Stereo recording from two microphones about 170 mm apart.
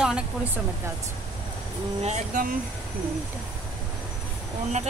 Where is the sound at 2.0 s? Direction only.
45° right (ahead or behind).